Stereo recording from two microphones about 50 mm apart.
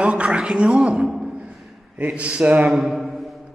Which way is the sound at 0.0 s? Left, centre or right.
Right.